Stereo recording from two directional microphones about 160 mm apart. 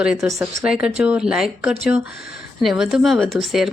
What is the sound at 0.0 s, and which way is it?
A woman's voice, 5° right (ahead or behind).